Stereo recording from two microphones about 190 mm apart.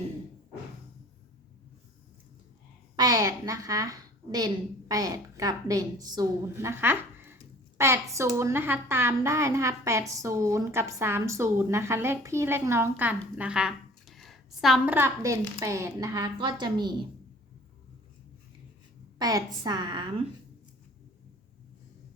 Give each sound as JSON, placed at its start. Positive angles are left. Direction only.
{"t": 2.9, "sound": "a woman's voice", "side_deg": -20}
{"t": 19.2, "sound": "a woman's voice", "side_deg": -20}